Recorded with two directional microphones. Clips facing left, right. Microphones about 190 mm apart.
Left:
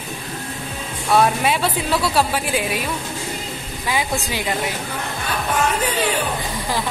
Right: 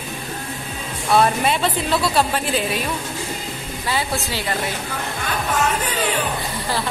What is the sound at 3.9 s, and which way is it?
Speech, 15° left (ahead or behind).